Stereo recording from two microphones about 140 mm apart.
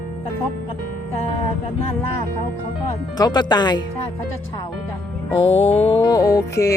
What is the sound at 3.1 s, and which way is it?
Speech, 30° left (ahead or behind).